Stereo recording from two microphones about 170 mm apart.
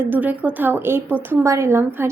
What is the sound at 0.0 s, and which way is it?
A woman's voice, 10° right (ahead or behind).